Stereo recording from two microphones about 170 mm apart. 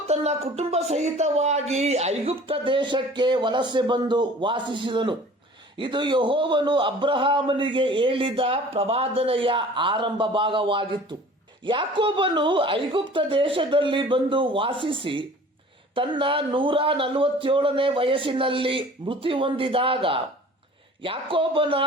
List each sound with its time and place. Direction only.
0.1 s a man's voice: 40° right (ahead or behind)